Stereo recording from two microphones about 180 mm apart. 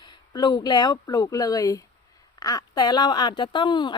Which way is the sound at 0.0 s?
25° left (ahead or behind).